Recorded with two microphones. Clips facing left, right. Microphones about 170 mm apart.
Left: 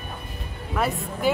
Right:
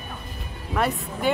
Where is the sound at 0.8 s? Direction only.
Centre (ahead or behind).